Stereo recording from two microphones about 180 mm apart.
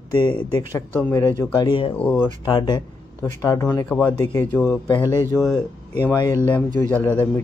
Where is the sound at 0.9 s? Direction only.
10° left (ahead or behind); by 1.9 s 25° left (ahead or behind).